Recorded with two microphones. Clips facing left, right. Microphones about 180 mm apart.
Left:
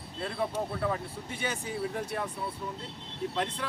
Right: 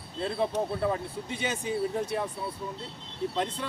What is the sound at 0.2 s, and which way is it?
Speech, 20° right (ahead or behind).